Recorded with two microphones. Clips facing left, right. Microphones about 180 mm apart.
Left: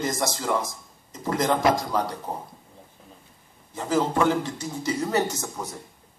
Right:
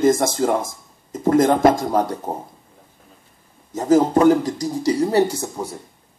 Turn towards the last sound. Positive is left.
turn(degrees=-30)  # may be behind; listen again after turning